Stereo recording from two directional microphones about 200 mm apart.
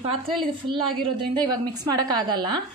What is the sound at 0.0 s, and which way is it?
A woman's voice, 25° right (ahead or behind).